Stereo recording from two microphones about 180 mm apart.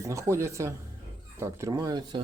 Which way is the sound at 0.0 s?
15° right (ahead or behind).